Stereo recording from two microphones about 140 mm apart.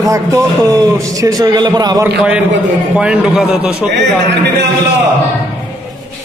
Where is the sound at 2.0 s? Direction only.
10° right (ahead or behind).